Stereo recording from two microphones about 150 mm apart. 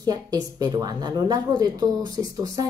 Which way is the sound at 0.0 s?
25° right (ahead or behind).